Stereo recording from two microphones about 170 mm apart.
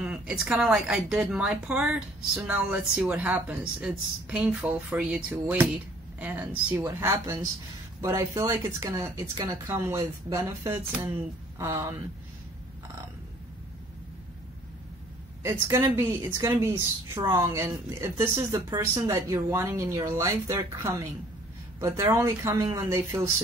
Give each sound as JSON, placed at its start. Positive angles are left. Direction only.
{"t": 0.0, "sound": "a woman's voice", "side_deg": -10}
{"t": 15.4, "sound": "a woman's voice", "side_deg": -15}